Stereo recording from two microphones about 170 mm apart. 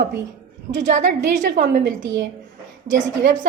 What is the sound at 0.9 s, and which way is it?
Speech, 45° right (ahead or behind).